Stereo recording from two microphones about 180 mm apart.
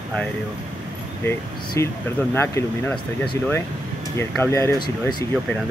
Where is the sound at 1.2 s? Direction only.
10° left (ahead or behind).